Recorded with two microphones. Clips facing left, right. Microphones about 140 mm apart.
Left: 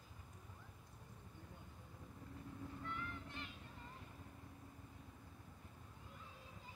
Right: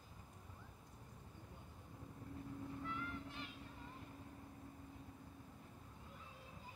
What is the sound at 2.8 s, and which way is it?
Music, centre (ahead or behind).